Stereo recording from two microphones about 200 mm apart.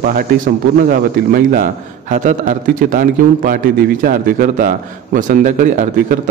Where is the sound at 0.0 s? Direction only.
45° right (ahead or behind).